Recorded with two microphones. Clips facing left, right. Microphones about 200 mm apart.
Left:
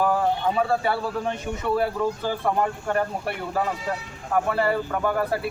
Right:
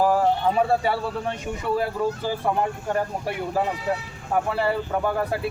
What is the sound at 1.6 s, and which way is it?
Speech, 10° right (ahead or behind).